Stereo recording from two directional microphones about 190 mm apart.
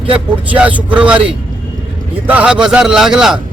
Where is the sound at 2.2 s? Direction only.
10° right (ahead or behind).